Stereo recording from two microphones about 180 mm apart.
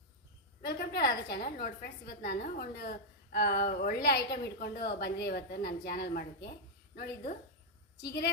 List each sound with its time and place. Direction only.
0.6 s a woman's voice: 60° left (ahead or behind)